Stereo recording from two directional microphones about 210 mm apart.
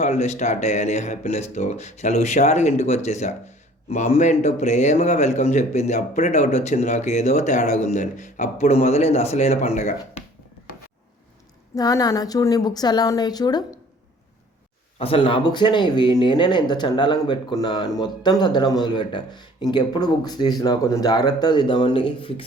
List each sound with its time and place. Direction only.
0.0 s speech: 35° left (ahead or behind)
11.7 s a woman's voice: 15° left (ahead or behind)
14.9 s speech: 25° left (ahead or behind)